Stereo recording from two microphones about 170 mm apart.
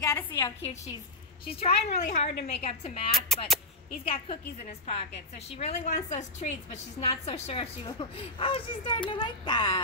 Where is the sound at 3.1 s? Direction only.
Centre (ahead or behind).